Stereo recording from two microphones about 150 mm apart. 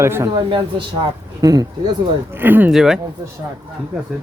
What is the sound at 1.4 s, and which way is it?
Speech, 25° right (ahead or behind).